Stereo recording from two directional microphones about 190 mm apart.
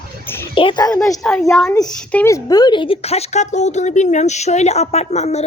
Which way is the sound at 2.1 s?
15° left (ahead or behind).